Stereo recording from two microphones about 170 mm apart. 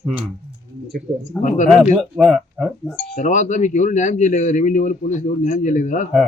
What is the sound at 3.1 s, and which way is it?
Speech, 50° left (ahead or behind).